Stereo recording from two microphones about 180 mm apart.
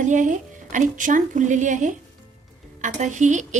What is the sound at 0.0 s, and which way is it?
Speech, 45° right (ahead or behind).